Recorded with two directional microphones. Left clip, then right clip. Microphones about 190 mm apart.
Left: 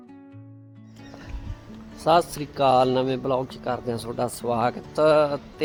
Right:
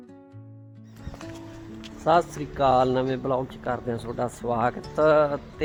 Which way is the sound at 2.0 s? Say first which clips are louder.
Left 1 dB; 10° left (ahead or behind).